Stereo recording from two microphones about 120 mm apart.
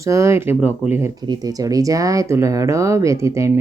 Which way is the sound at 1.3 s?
30° right (ahead or behind).